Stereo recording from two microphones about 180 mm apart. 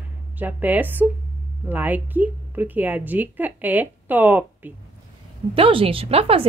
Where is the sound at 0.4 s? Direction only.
10° right (ahead or behind).